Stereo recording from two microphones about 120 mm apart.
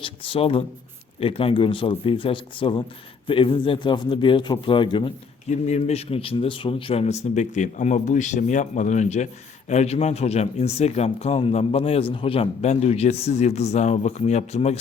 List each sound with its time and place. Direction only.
0.0 s a man's voice: 50° left (ahead or behind)
5.5 s speech: 70° left (ahead or behind)